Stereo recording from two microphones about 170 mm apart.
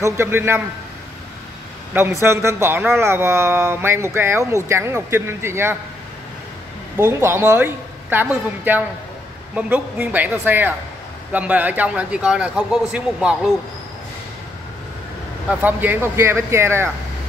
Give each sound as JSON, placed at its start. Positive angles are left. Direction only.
{"t": 0.0, "sound": "a man's voice", "side_deg": -15}
{"t": 2.0, "sound": "a man's voice", "side_deg": -15}
{"t": 7.0, "sound": "a man's voice", "side_deg": -15}
{"t": 15.6, "sound": "a man's voice", "side_deg": -10}